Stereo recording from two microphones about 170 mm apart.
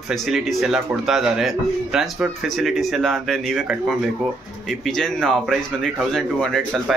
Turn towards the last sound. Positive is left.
turn(degrees=5)  # may be behind; listen again after turning